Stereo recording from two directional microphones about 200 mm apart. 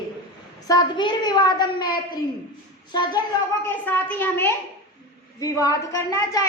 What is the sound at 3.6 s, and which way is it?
Speech, 10° left (ahead or behind).